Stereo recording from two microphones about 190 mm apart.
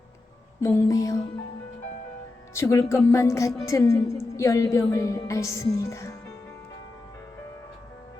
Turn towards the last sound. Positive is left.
turn(degrees=15)  # may be behind; listen again after turning